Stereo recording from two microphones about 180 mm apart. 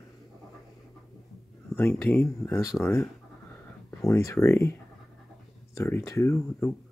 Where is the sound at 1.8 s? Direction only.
10° left (ahead or behind).